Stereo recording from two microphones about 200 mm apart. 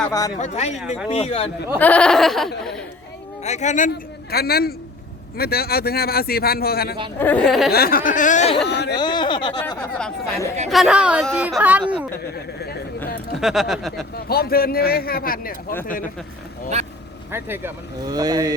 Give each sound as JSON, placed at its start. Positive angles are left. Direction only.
{"t": 0.1, "sound": "speech", "side_deg": 15}
{"t": 0.3, "sound": "a man's voice", "side_deg": 35}
{"t": 0.8, "sound": "speech", "side_deg": -5}
{"t": 1.1, "sound": "a man's voice", "side_deg": 30}
{"t": 1.8, "sound": "speech", "side_deg": 5}
{"t": 3.4, "sound": "a man's voice", "side_deg": 35}
{"t": 7.2, "sound": "speech", "side_deg": 5}
{"t": 7.7, "sound": "a man's voice", "side_deg": 50}
{"t": 8.6, "sound": "speech", "side_deg": 55}
{"t": 9.0, "sound": "speech", "side_deg": 20}
{"t": 10.7, "sound": "speech", "side_deg": 0}
{"t": 13.4, "sound": "speech", "side_deg": 0}
{"t": 14.3, "sound": "speech", "side_deg": 50}
{"t": 17.3, "sound": "speech", "side_deg": -10}